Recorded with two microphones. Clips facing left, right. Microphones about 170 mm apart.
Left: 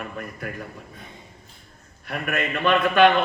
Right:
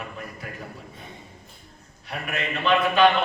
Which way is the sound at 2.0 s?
55° left (ahead or behind).